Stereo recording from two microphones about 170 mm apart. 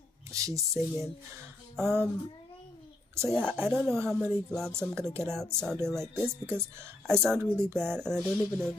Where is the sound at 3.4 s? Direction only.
10° right (ahead or behind).